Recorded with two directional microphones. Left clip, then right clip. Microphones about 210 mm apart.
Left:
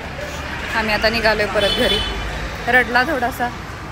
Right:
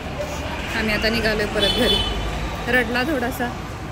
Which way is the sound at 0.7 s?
10° right (ahead or behind).